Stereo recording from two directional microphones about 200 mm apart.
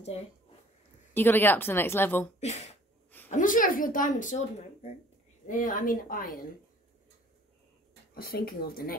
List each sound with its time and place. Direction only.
1.1 s speech: 10° left (ahead or behind)
3.3 s a woman's voice: 40° left (ahead or behind)
5.5 s a woman's voice: 40° left (ahead or behind)
8.1 s a woman's voice: 50° left (ahead or behind)